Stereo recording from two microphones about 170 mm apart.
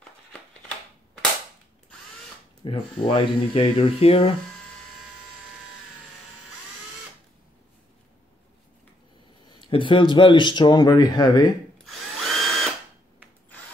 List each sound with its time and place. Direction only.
2.6 s speech: 30° left (ahead or behind)
9.5 s speech: 30° left (ahead or behind)
11.8 s drill: centre (ahead or behind)